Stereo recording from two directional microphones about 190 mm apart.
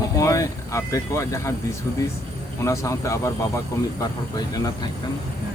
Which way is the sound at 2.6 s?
15° left (ahead or behind).